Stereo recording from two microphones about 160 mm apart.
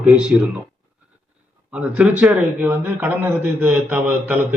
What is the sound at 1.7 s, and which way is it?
A man's voice, 10° right (ahead or behind).